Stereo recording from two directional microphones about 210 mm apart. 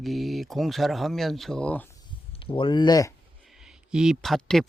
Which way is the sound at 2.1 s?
25° left (ahead or behind).